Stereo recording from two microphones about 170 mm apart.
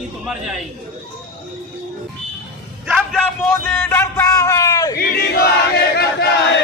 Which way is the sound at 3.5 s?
15° left (ahead or behind).